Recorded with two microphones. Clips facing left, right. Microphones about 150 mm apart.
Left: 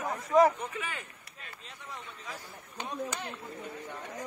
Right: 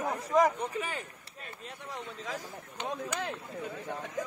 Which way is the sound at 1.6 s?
65° right (ahead or behind).